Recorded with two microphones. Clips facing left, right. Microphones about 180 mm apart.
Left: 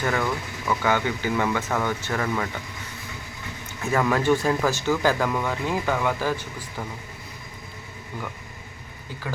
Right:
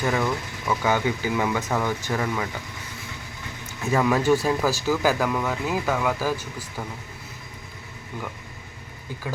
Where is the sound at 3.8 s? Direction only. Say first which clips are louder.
Right 1 dB; 15° right (ahead or behind).